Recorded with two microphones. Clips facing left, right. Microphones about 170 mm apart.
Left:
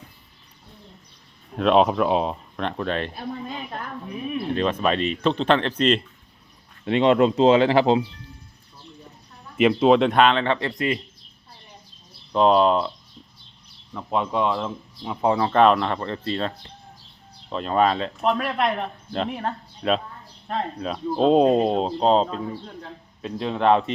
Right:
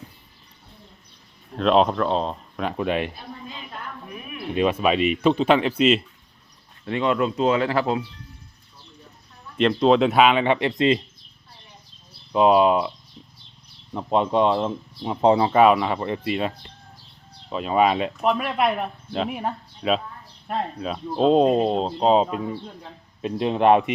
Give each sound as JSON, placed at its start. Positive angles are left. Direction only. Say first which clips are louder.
{"t": 1.5, "sound": "speech", "louder": "left 1 dB", "side_deg": 5}
{"t": 2.6, "sound": "speech", "louder": "right 2 dB", "side_deg": -10}
{"t": 4.5, "sound": "speech", "louder": "right 3 dB", "side_deg": -10}
{"t": 6.8, "sound": "speech", "louder": "left 5 dB", "side_deg": 25}
{"t": 9.6, "sound": "speech", "louder": "left 1 dB", "side_deg": 5}
{"t": 12.3, "sound": "speech", "louder": "right 1 dB", "side_deg": -5}
{"t": 13.9, "sound": "speech", "louder": "right 4 dB", "side_deg": -25}
{"t": 17.5, "sound": "speech", "louder": "right 1 dB", "side_deg": -5}
{"t": 22.1, "sound": "speech", "louder": "right 1 dB", "side_deg": -10}